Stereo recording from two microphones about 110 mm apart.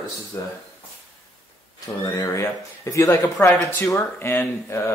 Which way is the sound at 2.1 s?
25° left (ahead or behind).